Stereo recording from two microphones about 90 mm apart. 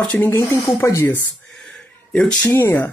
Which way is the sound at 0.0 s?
15° left (ahead or behind).